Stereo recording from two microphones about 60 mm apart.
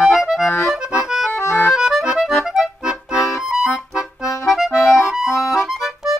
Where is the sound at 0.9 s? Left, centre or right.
Centre.